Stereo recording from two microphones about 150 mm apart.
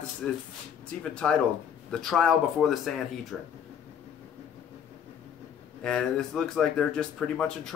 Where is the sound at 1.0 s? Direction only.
5° left (ahead or behind).